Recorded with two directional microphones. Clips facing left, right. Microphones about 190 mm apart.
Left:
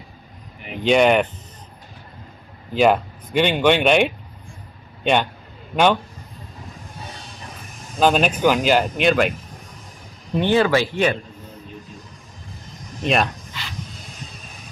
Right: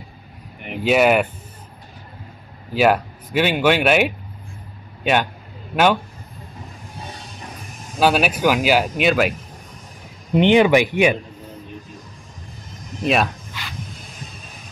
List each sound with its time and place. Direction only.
0.7 s speech: 5° right (ahead or behind)
2.7 s a man's voice: 5° right (ahead or behind)
8.0 s speech: 5° right (ahead or behind)
10.3 s speech: 20° right (ahead or behind)
13.0 s dog: 5° right (ahead or behind)